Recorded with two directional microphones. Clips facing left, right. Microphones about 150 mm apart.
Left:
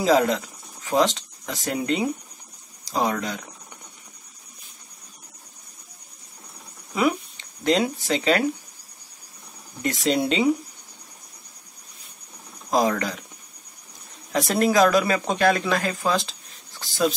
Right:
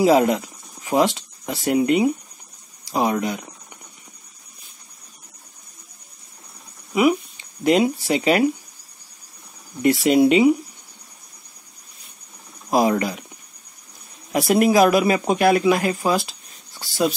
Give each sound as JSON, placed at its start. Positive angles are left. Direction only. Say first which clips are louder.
{"t": 0.0, "sound": "speech", "louder": "right 4 dB", "side_deg": -15}
{"t": 6.9, "sound": "speech", "louder": "right 5 dB", "side_deg": -10}
{"t": 10.0, "sound": "speech", "louder": "right 6 dB", "side_deg": -15}
{"t": 12.6, "sound": "speech", "louder": "right 3 dB", "side_deg": -15}
{"t": 14.3, "sound": "speech", "louder": "right 4 dB", "side_deg": -15}